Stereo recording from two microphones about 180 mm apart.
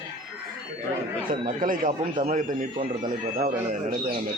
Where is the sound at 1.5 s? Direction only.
45° right (ahead or behind).